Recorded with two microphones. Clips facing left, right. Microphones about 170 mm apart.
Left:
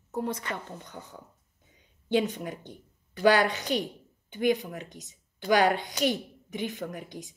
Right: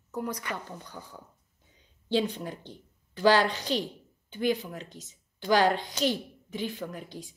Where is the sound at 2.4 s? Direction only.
10° left (ahead or behind).